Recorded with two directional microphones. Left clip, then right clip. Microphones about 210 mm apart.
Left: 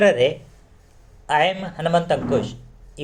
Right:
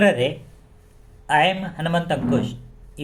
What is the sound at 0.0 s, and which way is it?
A man's voice, 5° left (ahead or behind).